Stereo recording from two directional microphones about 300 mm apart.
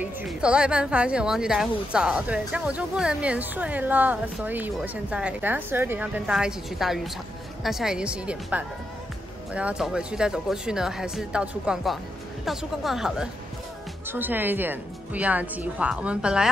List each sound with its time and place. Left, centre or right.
0.0 s speech: centre